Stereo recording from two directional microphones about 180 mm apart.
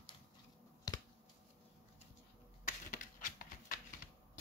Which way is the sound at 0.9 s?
20° left (ahead or behind).